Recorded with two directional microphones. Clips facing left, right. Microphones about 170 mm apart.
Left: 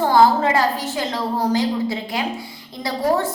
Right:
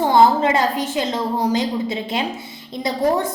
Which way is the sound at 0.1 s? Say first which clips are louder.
Right 1 dB; 20° right (ahead or behind).